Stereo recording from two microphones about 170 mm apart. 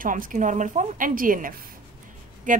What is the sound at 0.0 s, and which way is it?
A woman's voice, 50° right (ahead or behind).